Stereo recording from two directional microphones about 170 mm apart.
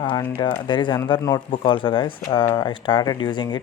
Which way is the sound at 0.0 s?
25° left (ahead or behind).